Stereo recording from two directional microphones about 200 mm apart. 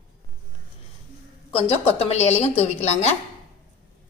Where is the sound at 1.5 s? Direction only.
30° left (ahead or behind).